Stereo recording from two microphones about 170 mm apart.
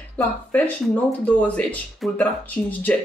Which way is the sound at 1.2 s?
10° left (ahead or behind).